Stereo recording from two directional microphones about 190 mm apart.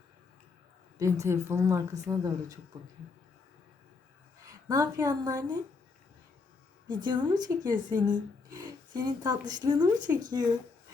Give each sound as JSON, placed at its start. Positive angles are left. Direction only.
{"t": 0.9, "sound": "speech", "side_deg": -15}
{"t": 4.4, "sound": "a woman's voice", "side_deg": -20}
{"t": 6.8, "sound": "a woman's voice", "side_deg": -25}